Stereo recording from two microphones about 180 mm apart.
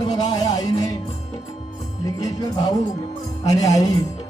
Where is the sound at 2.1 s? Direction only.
20° left (ahead or behind).